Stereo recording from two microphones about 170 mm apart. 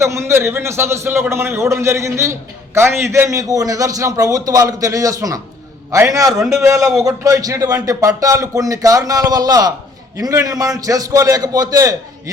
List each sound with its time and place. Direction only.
0.0 s a man's voice: 15° right (ahead or behind)